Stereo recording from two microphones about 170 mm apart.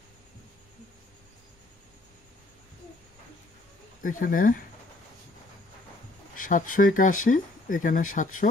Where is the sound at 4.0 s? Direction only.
55° left (ahead or behind).